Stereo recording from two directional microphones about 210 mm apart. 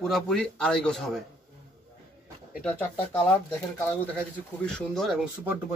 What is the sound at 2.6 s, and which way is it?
Speech, 5° left (ahead or behind).